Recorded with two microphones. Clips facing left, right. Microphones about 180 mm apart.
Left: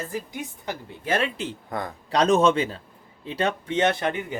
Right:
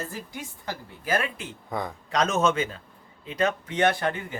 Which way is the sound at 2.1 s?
35° left (ahead or behind).